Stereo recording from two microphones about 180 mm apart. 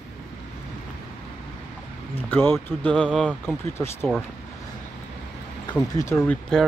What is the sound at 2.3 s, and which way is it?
Speech, 10° left (ahead or behind).